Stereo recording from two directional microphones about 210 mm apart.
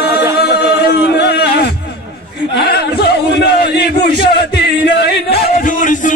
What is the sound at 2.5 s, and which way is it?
Speech, 50° left (ahead or behind).